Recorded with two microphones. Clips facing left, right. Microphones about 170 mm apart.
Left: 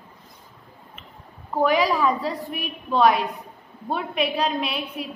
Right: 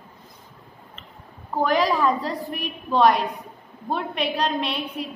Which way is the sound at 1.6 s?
5° left (ahead or behind).